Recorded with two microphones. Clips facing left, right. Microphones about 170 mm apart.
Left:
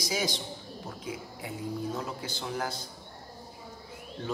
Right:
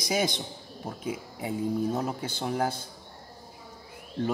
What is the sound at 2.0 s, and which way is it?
Speech, 55° right (ahead or behind).